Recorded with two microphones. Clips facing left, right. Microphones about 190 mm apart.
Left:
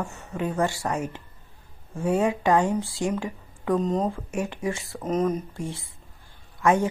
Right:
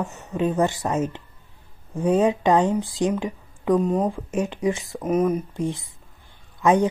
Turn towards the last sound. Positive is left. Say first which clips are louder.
# right 3 dB
turn(degrees=-20)  # may be behind; listen again after turning